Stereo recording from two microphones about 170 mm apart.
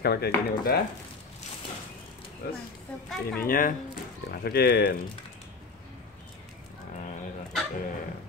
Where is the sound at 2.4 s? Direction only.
60° left (ahead or behind).